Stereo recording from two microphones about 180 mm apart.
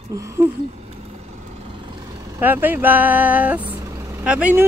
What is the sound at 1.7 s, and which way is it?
Vehicle, 25° right (ahead or behind).